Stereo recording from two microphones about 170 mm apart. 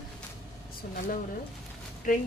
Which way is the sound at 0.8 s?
60° left (ahead or behind).